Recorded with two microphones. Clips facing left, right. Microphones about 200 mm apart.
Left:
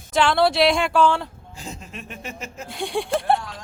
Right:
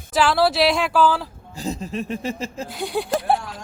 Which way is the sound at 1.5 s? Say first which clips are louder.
Right 13 dB; 35° right (ahead or behind).